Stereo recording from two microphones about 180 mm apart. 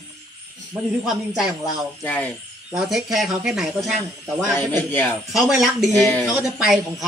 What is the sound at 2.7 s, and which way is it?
Speech, centre (ahead or behind).